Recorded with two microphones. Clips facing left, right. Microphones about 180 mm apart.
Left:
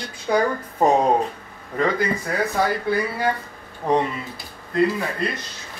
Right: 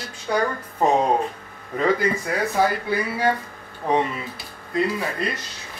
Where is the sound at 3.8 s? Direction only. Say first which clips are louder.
Left 1 dB; 5° right (ahead or behind).